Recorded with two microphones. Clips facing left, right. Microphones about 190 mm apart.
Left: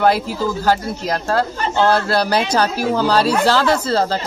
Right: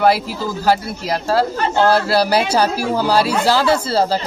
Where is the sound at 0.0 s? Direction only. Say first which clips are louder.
Even; 5° right (ahead or behind).